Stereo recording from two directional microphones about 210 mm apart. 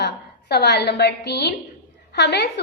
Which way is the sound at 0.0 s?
55° left (ahead or behind).